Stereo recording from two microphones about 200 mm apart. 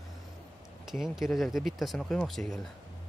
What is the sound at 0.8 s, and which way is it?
Speech, centre (ahead or behind).